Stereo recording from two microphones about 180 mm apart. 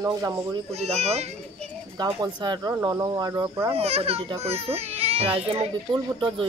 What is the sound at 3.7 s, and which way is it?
A child's voice, 35° right (ahead or behind).